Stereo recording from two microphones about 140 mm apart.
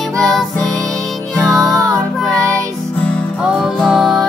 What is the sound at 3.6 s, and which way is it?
Music, centre (ahead or behind).